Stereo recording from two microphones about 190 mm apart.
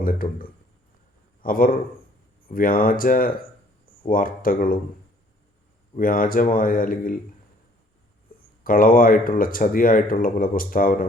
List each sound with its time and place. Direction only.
0.0 s a man's voice: 45° left (ahead or behind)
6.0 s speech: 45° left (ahead or behind)
8.6 s speech: 50° left (ahead or behind)